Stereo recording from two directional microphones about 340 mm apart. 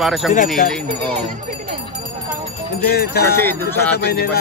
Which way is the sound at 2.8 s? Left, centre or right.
Left.